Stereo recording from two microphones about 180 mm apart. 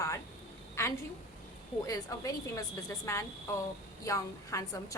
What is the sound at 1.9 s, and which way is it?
A woman's voice, 20° left (ahead or behind).